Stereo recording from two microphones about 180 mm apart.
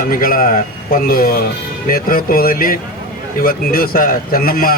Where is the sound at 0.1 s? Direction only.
50° left (ahead or behind).